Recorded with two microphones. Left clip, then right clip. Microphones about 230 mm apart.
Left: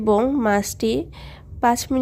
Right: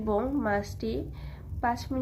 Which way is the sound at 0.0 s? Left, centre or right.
Left.